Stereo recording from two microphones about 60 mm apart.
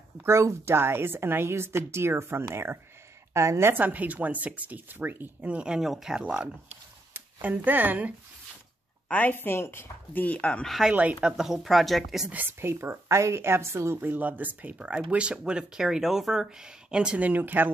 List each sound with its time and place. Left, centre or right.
0.2 s a woman's voice: right
3.7 s speech: right
5.4 s speech: centre
5.8 s speech: centre
7.6 s a woman's voice: right
9.3 s speech: left
10.2 s speech: left
10.9 s speech: right
11.3 s speech: centre
12.3 s a woman's voice: right
12.5 s a woman's voice: right
14.0 s speech: right; by 17.2 s centre
17.2 s speech: right